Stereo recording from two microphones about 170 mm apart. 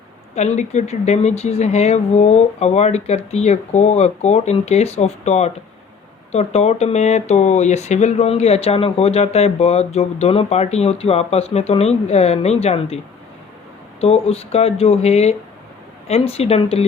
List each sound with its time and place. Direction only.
0.3 s speech: 40° left (ahead or behind)
14.0 s speech: 35° left (ahead or behind)